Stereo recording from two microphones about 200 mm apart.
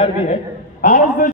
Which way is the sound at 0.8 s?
45° left (ahead or behind).